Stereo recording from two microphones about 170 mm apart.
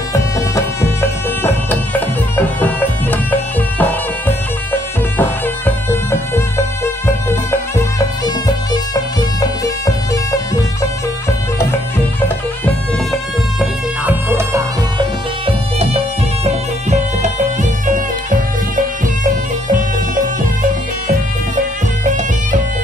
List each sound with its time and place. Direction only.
0.1 s music: 15° left (ahead or behind)
4.3 s bagpipes: 10° left (ahead or behind)
5.9 s music: 15° left (ahead or behind)
8.5 s bagpipes: 20° left (ahead or behind)
12.6 s music: centre (ahead or behind)
14.0 s music: 15° right (ahead or behind)
15.0 s music: 35° right (ahead or behind)
22.0 s bagpipes: 45° right (ahead or behind)